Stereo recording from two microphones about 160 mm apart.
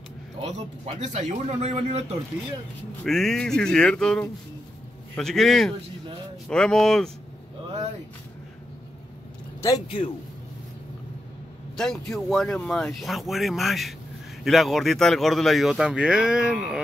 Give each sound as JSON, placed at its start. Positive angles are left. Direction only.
{"t": 0.4, "sound": "speech", "side_deg": -40}
{"t": 3.0, "sound": "speech", "side_deg": 5}
{"t": 9.6, "sound": "a man's voice", "side_deg": 25}
{"t": 11.7, "sound": "speech", "side_deg": 5}